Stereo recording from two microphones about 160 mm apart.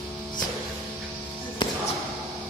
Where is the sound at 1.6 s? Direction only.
30° left (ahead or behind).